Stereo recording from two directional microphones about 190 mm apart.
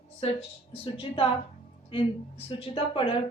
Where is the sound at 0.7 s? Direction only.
30° left (ahead or behind).